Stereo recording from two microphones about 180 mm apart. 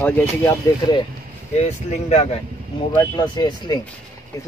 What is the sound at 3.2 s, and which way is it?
Speech, 25° left (ahead or behind).